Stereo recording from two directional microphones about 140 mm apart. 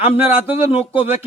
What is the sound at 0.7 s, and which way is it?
Speech, 45° left (ahead or behind).